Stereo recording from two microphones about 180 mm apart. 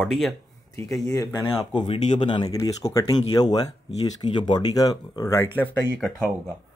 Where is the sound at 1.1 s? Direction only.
20° left (ahead or behind).